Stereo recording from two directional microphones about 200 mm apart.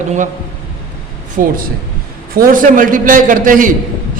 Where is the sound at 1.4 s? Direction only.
40° right (ahead or behind).